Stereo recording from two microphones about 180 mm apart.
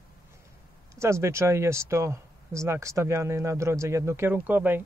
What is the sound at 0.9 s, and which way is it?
Speech, 15° right (ahead or behind).